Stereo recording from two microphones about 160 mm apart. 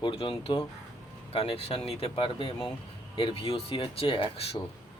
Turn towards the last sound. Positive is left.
turn(degrees=40)  # may be behind; listen again after turning